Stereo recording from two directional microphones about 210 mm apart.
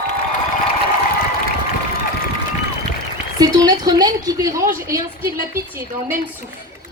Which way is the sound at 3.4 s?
20° right (ahead or behind).